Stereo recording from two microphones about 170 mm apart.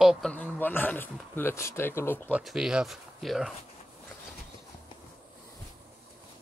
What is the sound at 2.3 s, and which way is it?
Speech, 5° right (ahead or behind).